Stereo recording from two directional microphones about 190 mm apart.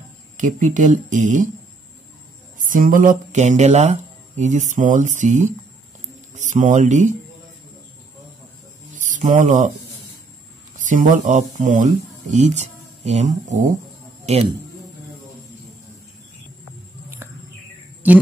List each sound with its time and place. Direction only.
0.4 s speech: 40° right (ahead or behind)
2.6 s speech: 45° right (ahead or behind)
8.9 s a sound: 40° right (ahead or behind)
10.8 s speech: 45° right (ahead or behind)